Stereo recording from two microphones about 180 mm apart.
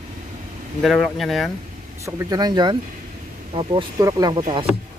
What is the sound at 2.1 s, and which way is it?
Speech, 20° right (ahead or behind).